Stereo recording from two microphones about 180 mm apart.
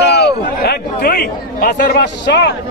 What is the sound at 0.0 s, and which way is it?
Chatter, 65° left (ahead or behind).